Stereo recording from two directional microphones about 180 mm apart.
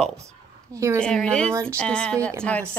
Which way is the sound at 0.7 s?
15° right (ahead or behind).